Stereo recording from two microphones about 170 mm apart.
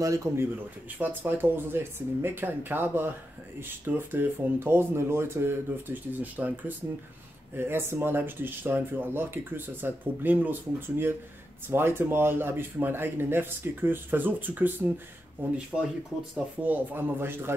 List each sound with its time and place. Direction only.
0.0 s speech: 20° right (ahead or behind)
7.5 s speech: 15° right (ahead or behind)